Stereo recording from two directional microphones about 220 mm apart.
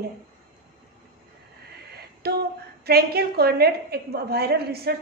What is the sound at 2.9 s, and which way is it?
A woman's voice, 45° right (ahead or behind).